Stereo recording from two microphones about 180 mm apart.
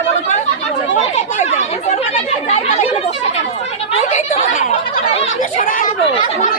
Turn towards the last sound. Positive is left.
turn(degrees=40)  # may be behind; listen again after turning